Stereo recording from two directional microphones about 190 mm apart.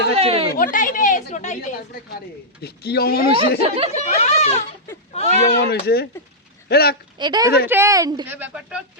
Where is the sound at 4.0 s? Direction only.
35° left (ahead or behind).